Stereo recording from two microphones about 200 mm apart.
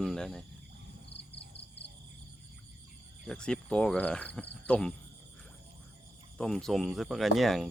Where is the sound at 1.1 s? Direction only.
60° left (ahead or behind).